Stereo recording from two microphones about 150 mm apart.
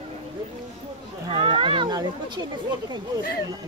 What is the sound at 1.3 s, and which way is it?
Speech, 35° right (ahead or behind).